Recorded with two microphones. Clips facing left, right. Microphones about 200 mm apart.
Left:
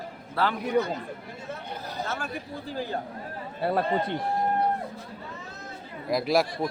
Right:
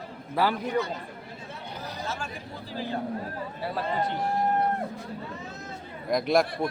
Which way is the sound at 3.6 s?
55° left (ahead or behind).